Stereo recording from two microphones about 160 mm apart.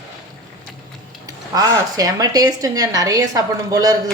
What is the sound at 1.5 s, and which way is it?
Speech, 25° right (ahead or behind).